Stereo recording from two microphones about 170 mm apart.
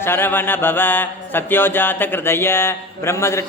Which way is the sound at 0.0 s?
15° left (ahead or behind).